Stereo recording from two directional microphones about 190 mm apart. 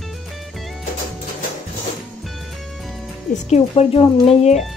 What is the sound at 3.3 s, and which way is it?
Speech, 35° left (ahead or behind).